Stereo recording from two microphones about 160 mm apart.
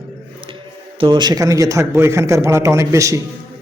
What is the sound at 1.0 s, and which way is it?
A man's voice, 30° right (ahead or behind).